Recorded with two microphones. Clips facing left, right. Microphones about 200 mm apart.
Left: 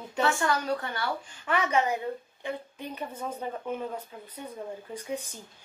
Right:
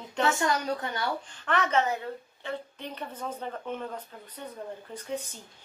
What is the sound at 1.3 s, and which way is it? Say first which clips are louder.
Speech: left 1 dB; 10° left (ahead or behind).